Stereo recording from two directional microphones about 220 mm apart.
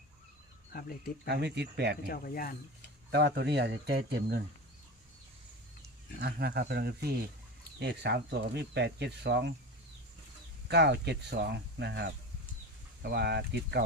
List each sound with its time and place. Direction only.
0.7 s speech: 40° left (ahead or behind)
1.3 s speech: 50° right (ahead or behind)
2.0 s speech: 40° left (ahead or behind)
3.1 s speech: 50° right (ahead or behind)
6.1 s speech: 50° right (ahead or behind)
10.7 s speech: 50° right (ahead or behind)